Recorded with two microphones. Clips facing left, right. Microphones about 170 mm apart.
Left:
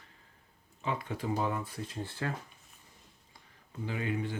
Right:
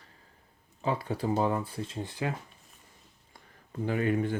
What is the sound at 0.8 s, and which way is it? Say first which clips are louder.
Speech: right 5 dB; 35° right (ahead or behind).